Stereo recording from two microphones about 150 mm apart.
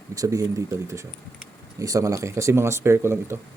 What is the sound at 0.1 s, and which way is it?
Speech, 20° right (ahead or behind).